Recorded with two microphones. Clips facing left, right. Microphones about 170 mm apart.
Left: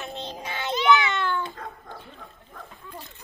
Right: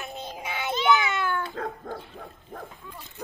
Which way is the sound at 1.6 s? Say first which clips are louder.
Right 7 dB; 65° right (ahead or behind).